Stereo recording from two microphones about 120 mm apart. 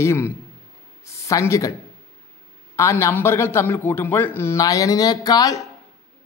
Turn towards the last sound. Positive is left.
turn(degrees=30)  # may be behind; listen again after turning